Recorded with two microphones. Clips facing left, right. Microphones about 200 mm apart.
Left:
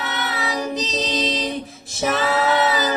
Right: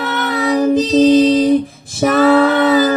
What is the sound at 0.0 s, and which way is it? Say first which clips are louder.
Child singing: right 9 dB; 55° right (ahead or behind).